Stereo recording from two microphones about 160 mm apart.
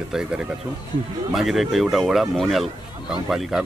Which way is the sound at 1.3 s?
Centre (ahead or behind).